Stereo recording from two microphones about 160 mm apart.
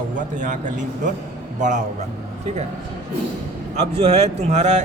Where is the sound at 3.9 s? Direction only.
40° right (ahead or behind).